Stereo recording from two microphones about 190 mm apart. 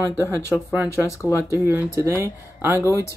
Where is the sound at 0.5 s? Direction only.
Centre (ahead or behind).